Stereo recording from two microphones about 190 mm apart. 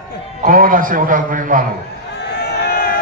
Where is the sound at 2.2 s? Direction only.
60° left (ahead or behind).